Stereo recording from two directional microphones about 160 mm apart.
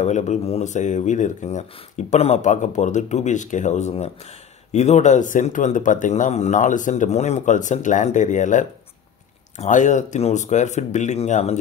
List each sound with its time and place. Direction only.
0.0 s speech: 45° left (ahead or behind)